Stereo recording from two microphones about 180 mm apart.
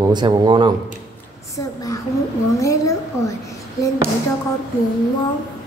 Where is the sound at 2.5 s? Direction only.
15° left (ahead or behind).